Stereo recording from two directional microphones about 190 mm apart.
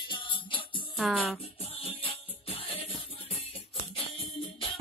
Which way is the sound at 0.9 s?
Centre (ahead or behind).